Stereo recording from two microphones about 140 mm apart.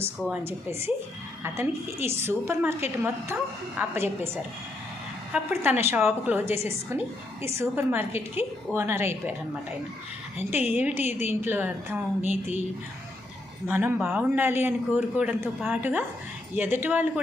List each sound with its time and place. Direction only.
0.0 s a man's voice: 15° right (ahead or behind)
5.3 s a man's voice: 15° right (ahead or behind)
10.8 s a man's voice: 15° right (ahead or behind)
11.0 s a woman's voice: 55° left (ahead or behind)
11.3 s a man's voice: 15° right (ahead or behind)
13.7 s a man's voice: 15° right (ahead or behind)